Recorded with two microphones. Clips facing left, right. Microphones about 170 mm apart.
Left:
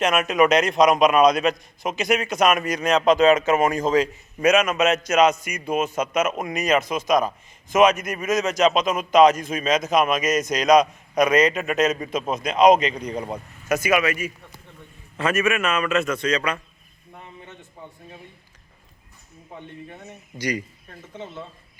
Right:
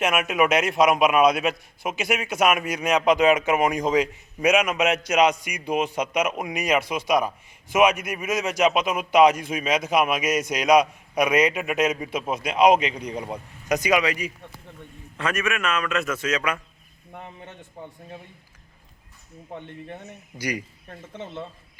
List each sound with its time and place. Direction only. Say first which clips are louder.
0.0 s a man's voice: left 3 dB; 10° right (ahead or behind)
15.2 s a man's voice: left 4 dB; 5° left (ahead or behind)
20.4 s a man's voice: left 3 dB; 10° right (ahead or behind)